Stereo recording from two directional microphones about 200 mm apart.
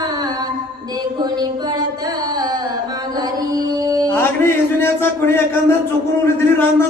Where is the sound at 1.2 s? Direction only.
20° right (ahead or behind).